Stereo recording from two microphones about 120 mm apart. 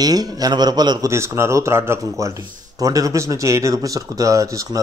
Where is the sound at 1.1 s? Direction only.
20° right (ahead or behind).